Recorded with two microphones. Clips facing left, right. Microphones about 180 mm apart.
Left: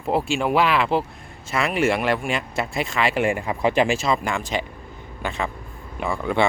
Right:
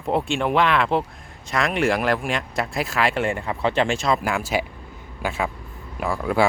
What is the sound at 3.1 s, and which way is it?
Speech, 10° left (ahead or behind).